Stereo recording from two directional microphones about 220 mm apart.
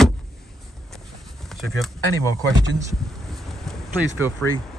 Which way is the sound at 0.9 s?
Centre (ahead or behind).